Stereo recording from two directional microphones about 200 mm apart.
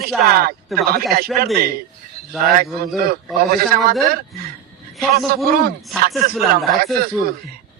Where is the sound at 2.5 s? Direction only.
45° right (ahead or behind).